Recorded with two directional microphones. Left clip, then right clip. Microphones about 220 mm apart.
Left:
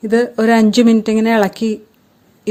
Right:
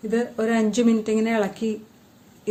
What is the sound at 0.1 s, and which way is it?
Speech, 45° left (ahead or behind).